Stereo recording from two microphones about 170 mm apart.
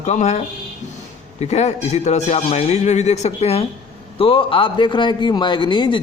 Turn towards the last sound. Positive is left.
turn(degrees=30)  # may be behind; listen again after turning